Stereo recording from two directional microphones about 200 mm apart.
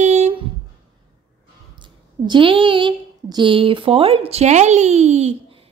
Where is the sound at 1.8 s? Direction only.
25° right (ahead or behind).